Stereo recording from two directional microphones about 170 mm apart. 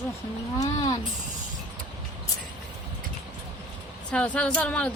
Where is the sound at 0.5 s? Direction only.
20° left (ahead or behind).